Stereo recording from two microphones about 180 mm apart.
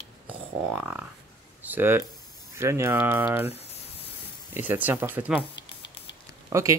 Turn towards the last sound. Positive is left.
turn(degrees=-15)  # may be behind; listen again after turning